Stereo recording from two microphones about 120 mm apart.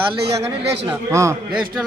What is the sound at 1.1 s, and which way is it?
Speech, 25° right (ahead or behind).